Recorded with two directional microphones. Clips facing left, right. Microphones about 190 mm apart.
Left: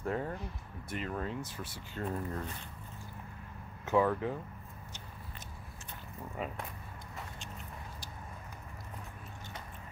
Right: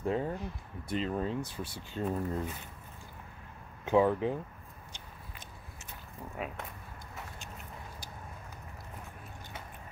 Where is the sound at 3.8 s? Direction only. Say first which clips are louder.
Right 3 dB; 20° right (ahead or behind).